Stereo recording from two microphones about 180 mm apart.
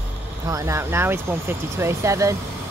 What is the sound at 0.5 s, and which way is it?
Speech, 15° right (ahead or behind).